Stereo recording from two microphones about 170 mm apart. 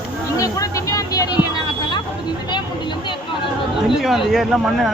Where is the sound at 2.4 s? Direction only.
25° left (ahead or behind).